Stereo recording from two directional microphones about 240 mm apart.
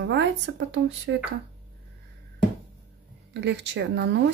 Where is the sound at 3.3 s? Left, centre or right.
Right.